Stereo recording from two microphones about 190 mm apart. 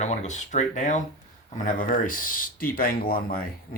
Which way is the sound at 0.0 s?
40° left (ahead or behind).